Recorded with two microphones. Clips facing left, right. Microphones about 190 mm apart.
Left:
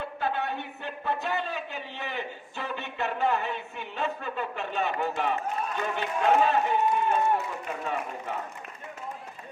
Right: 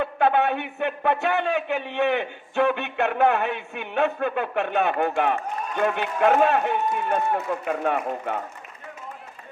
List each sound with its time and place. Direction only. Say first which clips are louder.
0.0 s a man's voice: right 9 dB; 65° right (ahead or behind)